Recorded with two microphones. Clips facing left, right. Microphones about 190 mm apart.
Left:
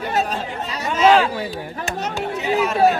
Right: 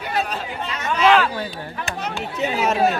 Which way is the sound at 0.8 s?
35° left (ahead or behind).